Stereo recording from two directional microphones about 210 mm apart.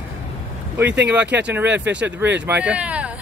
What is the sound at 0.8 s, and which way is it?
Speech, 55° right (ahead or behind).